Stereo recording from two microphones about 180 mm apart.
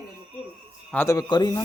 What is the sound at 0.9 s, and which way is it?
Speech, 15° left (ahead or behind).